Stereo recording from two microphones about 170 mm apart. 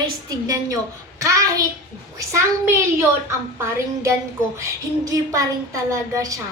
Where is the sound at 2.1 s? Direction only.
15° right (ahead or behind).